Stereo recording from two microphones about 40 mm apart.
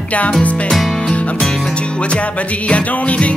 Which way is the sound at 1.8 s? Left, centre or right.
Left.